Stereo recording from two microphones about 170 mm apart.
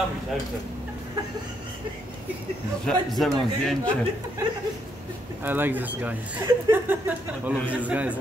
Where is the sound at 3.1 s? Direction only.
Centre (ahead or behind).